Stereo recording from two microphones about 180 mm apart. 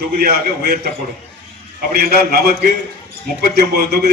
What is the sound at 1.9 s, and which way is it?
A man's voice, 60° right (ahead or behind).